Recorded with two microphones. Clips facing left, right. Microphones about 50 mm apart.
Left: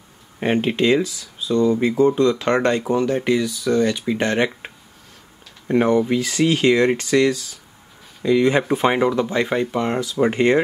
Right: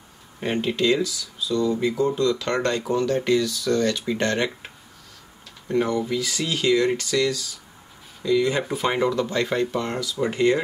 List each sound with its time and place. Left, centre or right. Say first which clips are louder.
0.4 s speech: left 4 dB; left
5.7 s speech: left 6 dB; left